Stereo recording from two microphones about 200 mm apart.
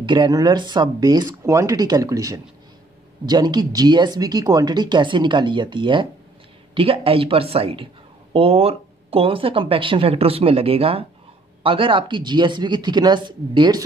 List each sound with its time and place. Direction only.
0.0 s speech: 20° right (ahead or behind)